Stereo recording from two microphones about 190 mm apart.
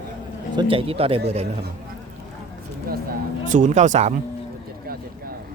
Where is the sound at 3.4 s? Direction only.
40° right (ahead or behind).